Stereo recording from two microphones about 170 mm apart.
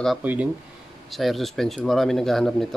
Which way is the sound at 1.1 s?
Centre (ahead or behind).